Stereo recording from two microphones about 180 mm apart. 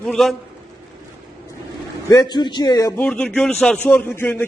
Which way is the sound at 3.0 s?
5° left (ahead or behind).